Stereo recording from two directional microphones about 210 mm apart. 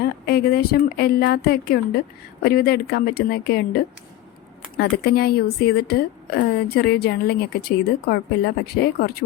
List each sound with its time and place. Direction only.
0.3 s a woman's voice: 45° left (ahead or behind)
4.8 s a woman's voice: 50° left (ahead or behind)